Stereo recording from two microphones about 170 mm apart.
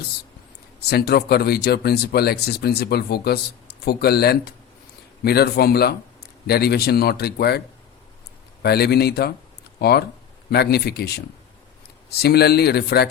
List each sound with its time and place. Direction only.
0.8 s speech: 70° left (ahead or behind)
8.6 s speech: 70° left (ahead or behind)